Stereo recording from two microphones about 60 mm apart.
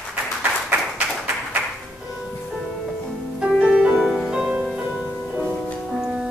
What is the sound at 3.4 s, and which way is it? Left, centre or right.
Music, centre.